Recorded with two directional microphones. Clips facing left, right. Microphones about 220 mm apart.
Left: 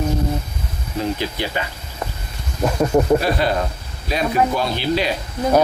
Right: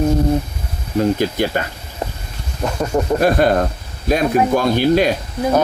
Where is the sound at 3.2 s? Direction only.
50° right (ahead or behind).